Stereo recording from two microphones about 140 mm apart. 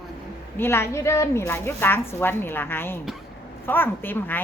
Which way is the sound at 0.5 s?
15° left (ahead or behind).